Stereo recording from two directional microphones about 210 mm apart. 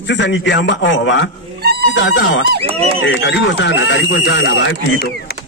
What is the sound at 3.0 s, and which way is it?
A man's voice, 60° left (ahead or behind).